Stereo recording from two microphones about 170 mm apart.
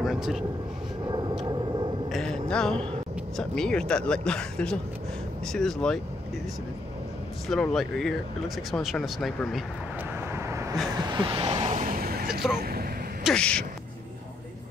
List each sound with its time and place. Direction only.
0.0 s speech: centre (ahead or behind)
1.0 s vehicle: 25° right (ahead or behind)
2.0 s a sound: centre (ahead or behind)
3.3 s speech: 5° left (ahead or behind)
7.4 s speech: centre (ahead or behind)
11.0 s vehicle: 30° right (ahead or behind)
11.8 s vehicle: 60° right (ahead or behind)
12.3 s speech: centre (ahead or behind)
12.5 s vehicle: 65° right (ahead or behind)
13.2 s speech: 5° left (ahead or behind)